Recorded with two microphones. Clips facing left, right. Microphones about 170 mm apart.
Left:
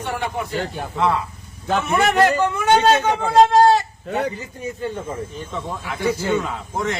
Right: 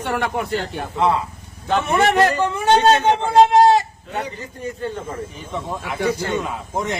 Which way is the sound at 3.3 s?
20° right (ahead or behind).